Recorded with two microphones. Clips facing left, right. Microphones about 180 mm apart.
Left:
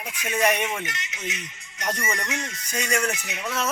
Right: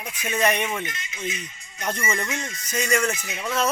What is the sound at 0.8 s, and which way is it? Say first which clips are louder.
Speech: right 2 dB; 75° left (ahead or behind).